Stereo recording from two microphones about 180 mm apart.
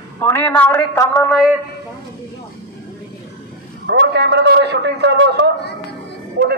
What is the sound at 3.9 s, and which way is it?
A man's voice, 75° right (ahead or behind).